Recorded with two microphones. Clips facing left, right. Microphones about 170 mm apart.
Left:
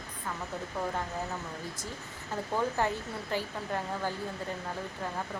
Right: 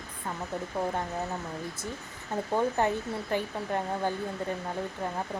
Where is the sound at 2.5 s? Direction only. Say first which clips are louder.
Right 3 dB; 20° right (ahead or behind).